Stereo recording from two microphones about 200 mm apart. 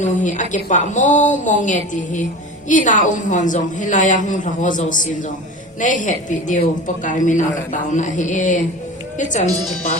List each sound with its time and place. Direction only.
0.0 s speech: 40° left (ahead or behind)